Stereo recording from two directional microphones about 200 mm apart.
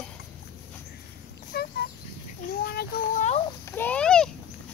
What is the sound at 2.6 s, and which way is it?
Child singing, 50° left (ahead or behind).